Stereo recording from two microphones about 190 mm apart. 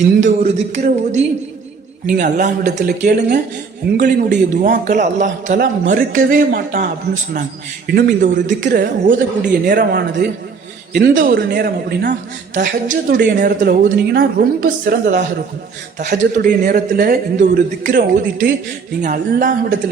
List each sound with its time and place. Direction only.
0.2 s a man's voice: 40° right (ahead or behind); by 12.1 s 55° right (ahead or behind)
12.5 s a man's voice: 45° right (ahead or behind)
17.3 s a man's voice: 40° right (ahead or behind)